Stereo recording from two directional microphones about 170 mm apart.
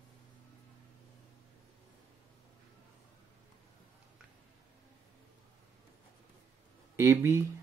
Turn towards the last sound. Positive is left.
turn(degrees=-15)  # may be behind; listen again after turning